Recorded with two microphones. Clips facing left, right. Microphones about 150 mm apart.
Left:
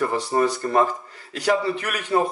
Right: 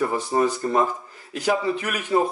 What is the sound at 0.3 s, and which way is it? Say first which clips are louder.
Speech: even; 10° right (ahead or behind).